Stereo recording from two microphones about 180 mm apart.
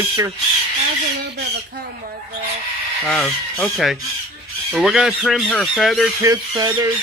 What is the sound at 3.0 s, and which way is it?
Speech, 5° left (ahead or behind).